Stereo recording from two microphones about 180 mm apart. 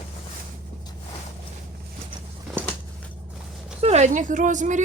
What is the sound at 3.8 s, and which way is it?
A woman's voice, 35° right (ahead or behind).